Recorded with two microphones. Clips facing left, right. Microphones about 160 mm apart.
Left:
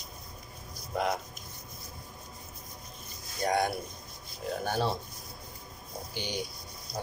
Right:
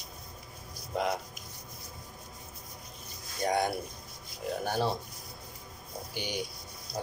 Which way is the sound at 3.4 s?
20° right (ahead or behind).